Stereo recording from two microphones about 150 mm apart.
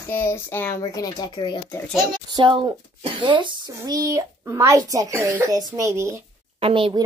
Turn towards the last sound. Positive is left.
turn(degrees=-35)  # may be behind; listen again after turning